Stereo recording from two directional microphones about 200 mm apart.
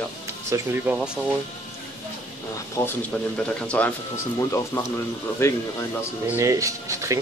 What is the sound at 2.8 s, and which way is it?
Speech, 5° left (ahead or behind).